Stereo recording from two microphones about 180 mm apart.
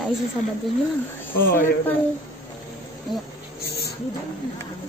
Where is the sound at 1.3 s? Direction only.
50° left (ahead or behind).